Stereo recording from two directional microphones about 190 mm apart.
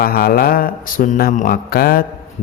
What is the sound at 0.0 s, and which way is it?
Speech, 55° left (ahead or behind).